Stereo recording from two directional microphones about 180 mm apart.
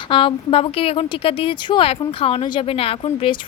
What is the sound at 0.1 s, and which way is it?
A woman's voice, 30° left (ahead or behind).